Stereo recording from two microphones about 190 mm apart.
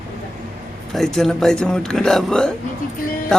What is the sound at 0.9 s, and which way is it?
A man's voice, centre (ahead or behind).